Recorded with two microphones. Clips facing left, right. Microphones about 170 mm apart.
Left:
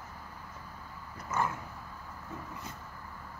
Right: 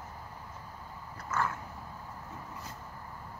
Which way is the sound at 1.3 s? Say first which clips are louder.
Left 1 dB; 15° left (ahead or behind).